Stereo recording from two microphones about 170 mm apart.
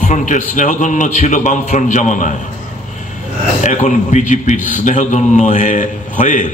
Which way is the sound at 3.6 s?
45° left (ahead or behind).